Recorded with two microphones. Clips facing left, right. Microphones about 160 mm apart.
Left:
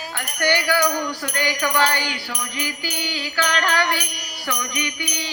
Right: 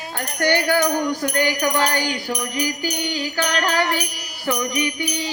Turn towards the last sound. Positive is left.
turn(degrees=-35)  # may be behind; listen again after turning